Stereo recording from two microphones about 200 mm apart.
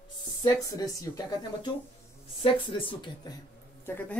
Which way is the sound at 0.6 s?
15° left (ahead or behind).